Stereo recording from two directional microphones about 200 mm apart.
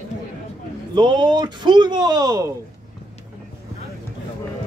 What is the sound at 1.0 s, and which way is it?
Speech, 20° right (ahead or behind).